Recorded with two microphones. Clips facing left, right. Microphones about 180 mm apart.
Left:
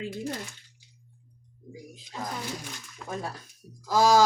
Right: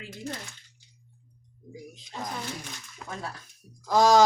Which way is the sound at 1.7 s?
10° left (ahead or behind).